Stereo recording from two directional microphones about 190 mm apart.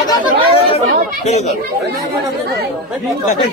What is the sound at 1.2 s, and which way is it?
Speech, 35° left (ahead or behind).